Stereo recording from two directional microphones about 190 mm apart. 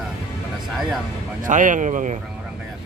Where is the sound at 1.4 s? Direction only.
45° right (ahead or behind).